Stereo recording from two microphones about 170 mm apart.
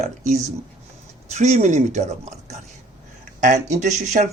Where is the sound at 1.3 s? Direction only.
40° right (ahead or behind).